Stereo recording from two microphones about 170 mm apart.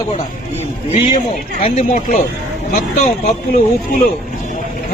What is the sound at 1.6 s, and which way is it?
Speech, 40° left (ahead or behind).